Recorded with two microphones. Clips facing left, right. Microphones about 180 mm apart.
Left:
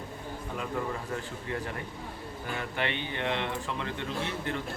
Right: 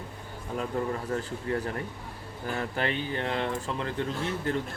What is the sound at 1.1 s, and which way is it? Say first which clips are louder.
Speech: right 5 dB; 40° right (ahead or behind).